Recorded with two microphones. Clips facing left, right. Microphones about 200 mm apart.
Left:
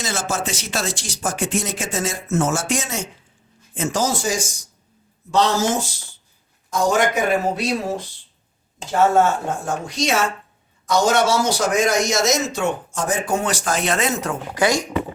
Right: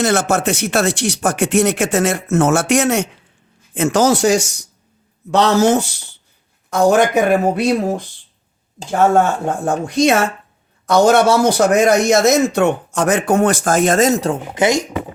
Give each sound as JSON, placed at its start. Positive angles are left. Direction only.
{"t": 0.0, "sound": "a man's voice", "side_deg": -65}